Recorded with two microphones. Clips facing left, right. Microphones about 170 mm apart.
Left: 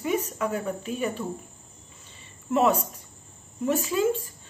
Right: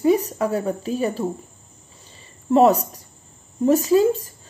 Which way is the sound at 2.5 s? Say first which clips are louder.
Right 7 dB; 35° right (ahead or behind).